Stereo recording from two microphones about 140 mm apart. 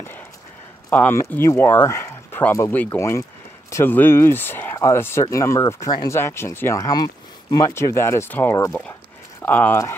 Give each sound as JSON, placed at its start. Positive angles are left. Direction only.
{"t": 0.8, "sound": "speech", "side_deg": 15}